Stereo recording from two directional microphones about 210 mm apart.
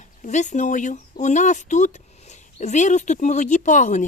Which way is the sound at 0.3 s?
35° left (ahead or behind).